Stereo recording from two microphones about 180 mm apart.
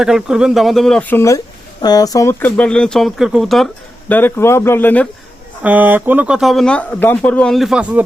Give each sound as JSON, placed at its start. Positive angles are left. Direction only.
{"t": 0.0, "sound": "speech", "side_deg": 0}
{"t": 4.1, "sound": "speech", "side_deg": 10}
{"t": 5.6, "sound": "speech", "side_deg": -10}